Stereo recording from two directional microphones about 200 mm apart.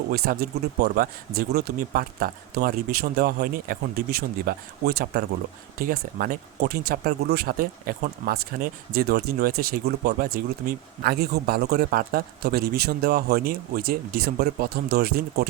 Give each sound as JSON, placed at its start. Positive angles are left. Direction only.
{"t": 0.1, "sound": "speech", "side_deg": -50}